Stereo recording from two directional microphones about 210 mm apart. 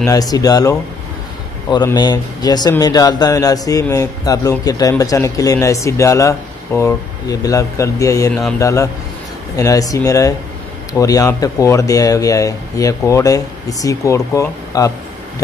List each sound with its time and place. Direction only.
0.0 s speech: 15° left (ahead or behind)